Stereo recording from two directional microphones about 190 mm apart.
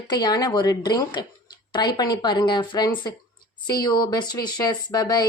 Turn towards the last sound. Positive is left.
turn(degrees=20)  # may be behind; listen again after turning